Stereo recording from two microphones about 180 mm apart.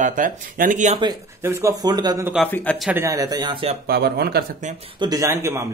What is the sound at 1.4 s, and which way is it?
Speech, 15° right (ahead or behind).